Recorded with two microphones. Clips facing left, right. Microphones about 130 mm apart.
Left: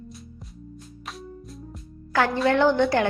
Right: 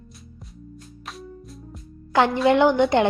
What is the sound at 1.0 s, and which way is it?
Music, centre (ahead or behind).